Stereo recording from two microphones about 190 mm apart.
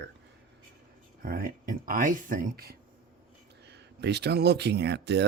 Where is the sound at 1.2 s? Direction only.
50° right (ahead or behind).